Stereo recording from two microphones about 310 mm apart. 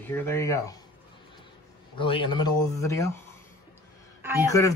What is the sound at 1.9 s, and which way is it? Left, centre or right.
Speech, centre.